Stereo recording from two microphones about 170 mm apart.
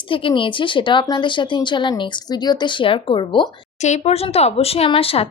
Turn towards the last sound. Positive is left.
turn(degrees=35)  # may be behind; listen again after turning